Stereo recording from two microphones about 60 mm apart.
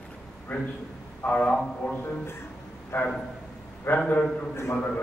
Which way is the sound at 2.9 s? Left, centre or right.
Left.